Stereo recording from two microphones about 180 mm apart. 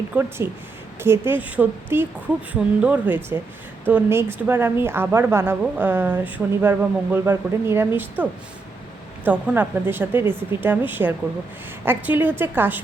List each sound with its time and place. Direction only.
0.2 s a woman's voice: 10° right (ahead or behind)